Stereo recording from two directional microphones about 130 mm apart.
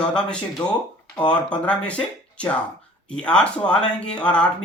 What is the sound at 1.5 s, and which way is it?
Speech, 10° left (ahead or behind).